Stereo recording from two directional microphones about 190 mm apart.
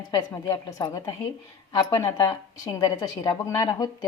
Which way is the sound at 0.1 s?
20° left (ahead or behind).